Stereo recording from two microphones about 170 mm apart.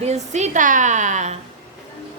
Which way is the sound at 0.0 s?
40° right (ahead or behind).